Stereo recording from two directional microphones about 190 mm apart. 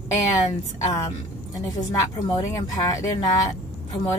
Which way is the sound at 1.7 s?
20° left (ahead or behind).